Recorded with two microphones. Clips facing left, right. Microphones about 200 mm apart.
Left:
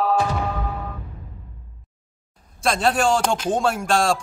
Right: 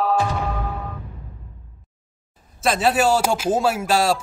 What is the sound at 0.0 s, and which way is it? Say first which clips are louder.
Music: even; centre (ahead or behind).